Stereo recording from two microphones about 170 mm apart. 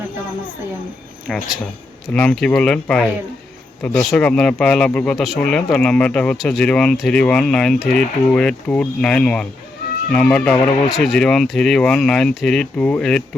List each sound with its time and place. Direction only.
1.3 s speech: 5° left (ahead or behind)